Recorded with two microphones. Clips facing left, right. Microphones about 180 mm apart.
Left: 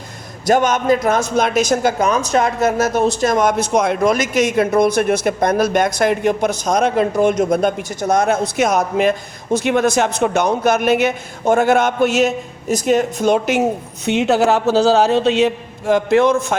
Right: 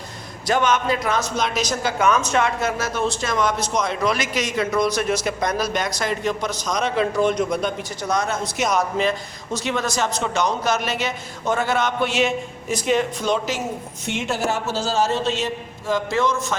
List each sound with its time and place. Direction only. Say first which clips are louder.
0.4 s a man's voice: left 5 dB; 45° left (ahead or behind)